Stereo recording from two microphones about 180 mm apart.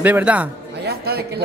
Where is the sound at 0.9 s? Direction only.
60° right (ahead or behind).